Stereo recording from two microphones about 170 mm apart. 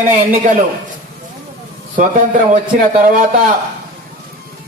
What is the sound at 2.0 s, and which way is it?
Speech, 50° right (ahead or behind).